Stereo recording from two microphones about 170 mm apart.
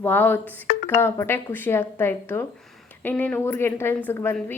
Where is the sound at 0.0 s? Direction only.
10° left (ahead or behind).